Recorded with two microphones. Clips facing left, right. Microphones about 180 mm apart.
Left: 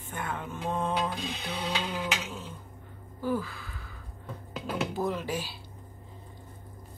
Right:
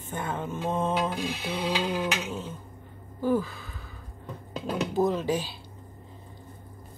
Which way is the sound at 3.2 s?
20° right (ahead or behind).